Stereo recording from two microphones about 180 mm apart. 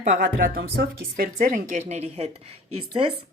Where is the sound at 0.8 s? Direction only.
60° right (ahead or behind).